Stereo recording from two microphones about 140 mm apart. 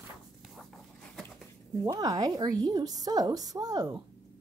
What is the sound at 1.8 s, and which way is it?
A woman's voice, 25° right (ahead or behind).